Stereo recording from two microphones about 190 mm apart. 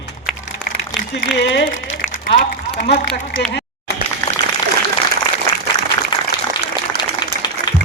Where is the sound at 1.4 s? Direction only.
65° left (ahead or behind).